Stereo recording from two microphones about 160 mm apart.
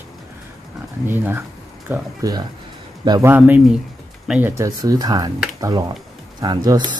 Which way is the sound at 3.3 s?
10° right (ahead or behind).